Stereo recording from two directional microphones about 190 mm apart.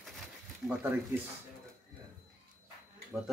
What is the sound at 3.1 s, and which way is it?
Speech, 5° right (ahead or behind).